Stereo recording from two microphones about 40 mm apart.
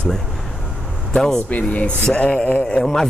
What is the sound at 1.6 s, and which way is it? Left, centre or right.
Speech, left.